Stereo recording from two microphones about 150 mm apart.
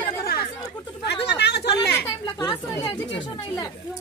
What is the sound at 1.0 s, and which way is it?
Chatter, 90° left.